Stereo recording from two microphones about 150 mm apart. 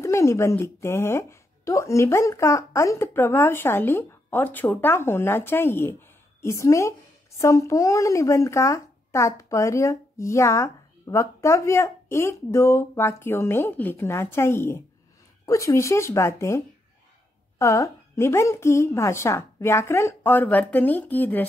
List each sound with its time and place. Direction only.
0.0 s a woman's voice: 20° left (ahead or behind)